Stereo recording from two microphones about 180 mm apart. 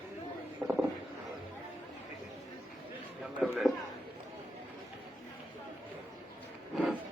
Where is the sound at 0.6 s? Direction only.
15° right (ahead or behind).